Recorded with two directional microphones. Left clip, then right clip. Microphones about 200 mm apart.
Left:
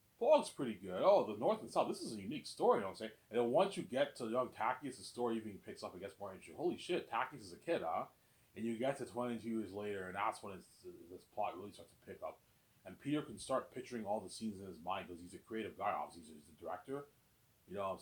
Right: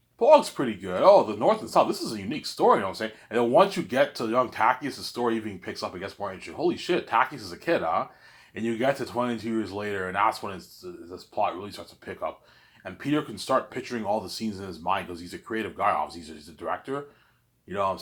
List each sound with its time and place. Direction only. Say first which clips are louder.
0.2 s speech: right 14 dB; 15° right (ahead or behind)
17.7 s speech: right 15 dB; 15° right (ahead or behind)